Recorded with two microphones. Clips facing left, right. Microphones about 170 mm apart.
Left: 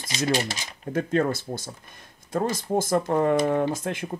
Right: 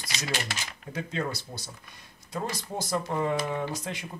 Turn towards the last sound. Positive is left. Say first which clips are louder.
# left 7 dB
turn(degrees=50)  # may be behind; listen again after turning